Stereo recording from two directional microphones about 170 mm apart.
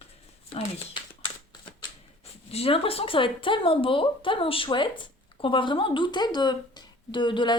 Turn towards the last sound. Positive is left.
turn(degrees=30)  # may be behind; listen again after turning